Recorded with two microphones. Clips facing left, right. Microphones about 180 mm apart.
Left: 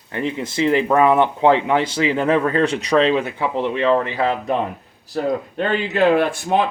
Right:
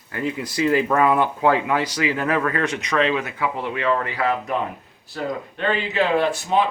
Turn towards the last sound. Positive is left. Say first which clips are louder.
# left 3 dB
turn(degrees=55)  # may be behind; listen again after turning